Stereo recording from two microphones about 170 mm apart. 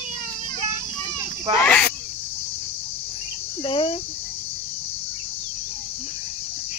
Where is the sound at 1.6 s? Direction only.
5° left (ahead or behind).